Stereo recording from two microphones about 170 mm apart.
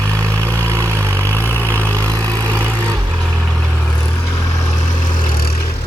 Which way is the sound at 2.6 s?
10° left (ahead or behind).